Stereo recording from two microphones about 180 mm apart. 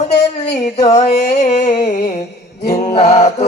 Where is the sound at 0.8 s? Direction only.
35° left (ahead or behind).